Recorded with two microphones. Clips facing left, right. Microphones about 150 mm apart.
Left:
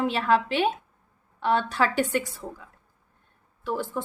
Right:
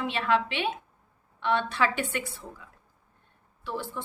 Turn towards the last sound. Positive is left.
turn(degrees=45)  # may be behind; listen again after turning